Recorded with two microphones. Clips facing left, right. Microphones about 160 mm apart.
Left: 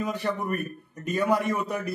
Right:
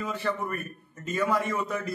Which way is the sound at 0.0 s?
15° left (ahead or behind).